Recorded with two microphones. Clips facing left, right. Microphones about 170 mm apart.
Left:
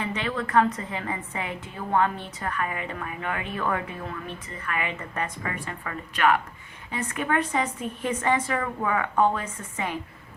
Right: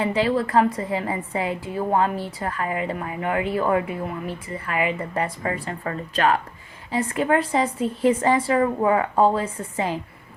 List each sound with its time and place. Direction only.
0.0 s a woman's voice: 30° right (ahead or behind)